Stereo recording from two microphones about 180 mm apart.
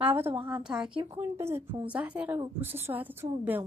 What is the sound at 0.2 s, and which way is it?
Speech, 30° right (ahead or behind).